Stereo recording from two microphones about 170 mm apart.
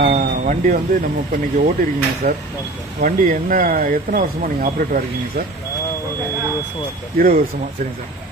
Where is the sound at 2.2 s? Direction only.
55° right (ahead or behind).